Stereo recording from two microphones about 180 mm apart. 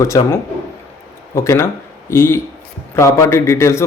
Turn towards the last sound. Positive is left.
turn(degrees=15)  # may be behind; listen again after turning